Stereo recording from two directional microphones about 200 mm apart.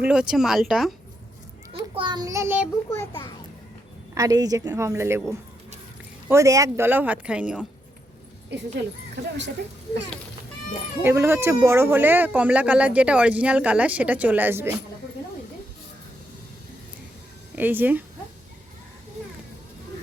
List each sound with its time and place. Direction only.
0.0 s speech: 5° right (ahead or behind)
1.7 s a child's voice: 20° right (ahead or behind)
4.1 s speech: 20° right (ahead or behind)
8.4 s speech: 60° right (ahead or behind)
11.0 s speech: 10° right (ahead or behind)
17.5 s speech: 10° right (ahead or behind)